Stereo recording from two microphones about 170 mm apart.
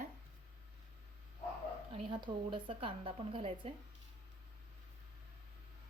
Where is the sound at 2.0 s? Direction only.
30° right (ahead or behind).